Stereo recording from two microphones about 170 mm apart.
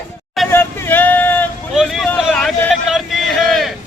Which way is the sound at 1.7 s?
Centre (ahead or behind).